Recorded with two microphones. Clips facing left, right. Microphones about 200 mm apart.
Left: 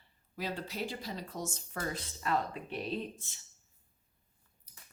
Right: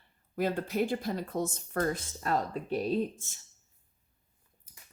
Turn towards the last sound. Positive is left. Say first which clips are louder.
# right 8 dB
turn(degrees=-40)  # may be behind; listen again after turning